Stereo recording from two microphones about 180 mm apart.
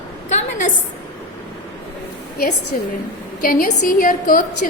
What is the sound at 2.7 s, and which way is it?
A woman's voice, 50° left (ahead or behind).